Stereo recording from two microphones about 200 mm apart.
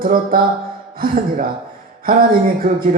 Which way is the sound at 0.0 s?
45° right (ahead or behind).